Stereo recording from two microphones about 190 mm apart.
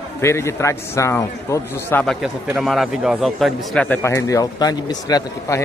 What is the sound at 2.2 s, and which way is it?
Speech, centre (ahead or behind).